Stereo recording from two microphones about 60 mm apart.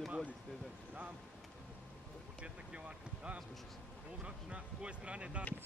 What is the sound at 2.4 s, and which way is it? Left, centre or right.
Speech, centre.